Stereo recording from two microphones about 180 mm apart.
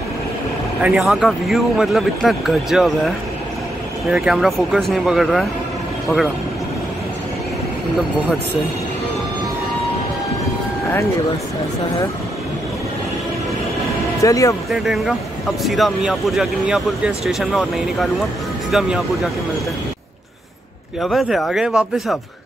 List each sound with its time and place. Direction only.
0.8 s speech: centre (ahead or behind)
4.1 s speech: centre (ahead or behind)
14.2 s speech: 20° left (ahead or behind)
14.7 s speech: centre (ahead or behind)
21.0 s speech: centre (ahead or behind)